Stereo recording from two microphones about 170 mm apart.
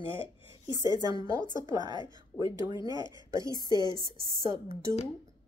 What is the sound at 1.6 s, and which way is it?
Speech, 25° right (ahead or behind).